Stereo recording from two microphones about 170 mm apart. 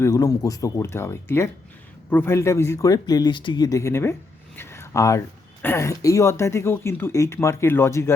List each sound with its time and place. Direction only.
0.0 s speech: 20° left (ahead or behind)
4.5 s a sound: 15° left (ahead or behind)
5.6 s speech: 15° left (ahead or behind)